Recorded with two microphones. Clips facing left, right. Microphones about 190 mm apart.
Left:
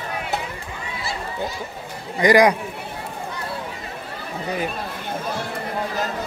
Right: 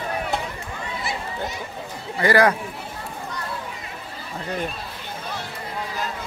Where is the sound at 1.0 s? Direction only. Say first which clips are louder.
Left 2 dB; 20° right (ahead or behind).